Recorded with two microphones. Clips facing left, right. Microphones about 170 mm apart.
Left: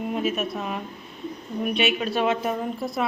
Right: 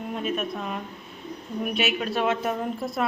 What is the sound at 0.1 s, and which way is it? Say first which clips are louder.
A woman's voice: left 1 dB; 5° left (ahead or behind).